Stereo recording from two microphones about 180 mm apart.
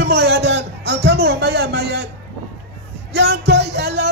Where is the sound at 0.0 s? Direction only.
65° right (ahead or behind).